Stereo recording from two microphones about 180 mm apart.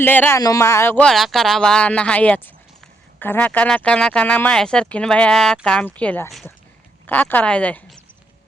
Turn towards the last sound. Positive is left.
turn(degrees=5)  # may be behind; listen again after turning